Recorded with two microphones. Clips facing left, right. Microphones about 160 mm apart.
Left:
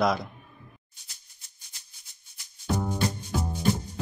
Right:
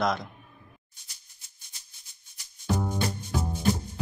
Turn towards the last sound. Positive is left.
turn(degrees=0)  # may be behind; listen again after turning